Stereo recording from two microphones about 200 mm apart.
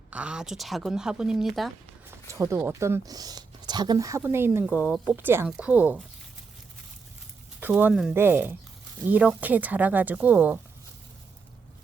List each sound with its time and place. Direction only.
0.1 s a woman's voice: 5° right (ahead or behind)
2.3 s speech: 15° right (ahead or behind)
7.6 s speech: 10° right (ahead or behind)